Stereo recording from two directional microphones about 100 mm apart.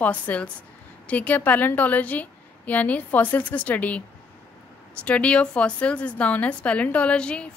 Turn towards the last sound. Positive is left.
turn(degrees=10)  # may be behind; listen again after turning